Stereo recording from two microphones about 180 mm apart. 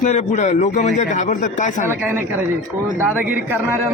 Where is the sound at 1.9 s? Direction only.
10° right (ahead or behind).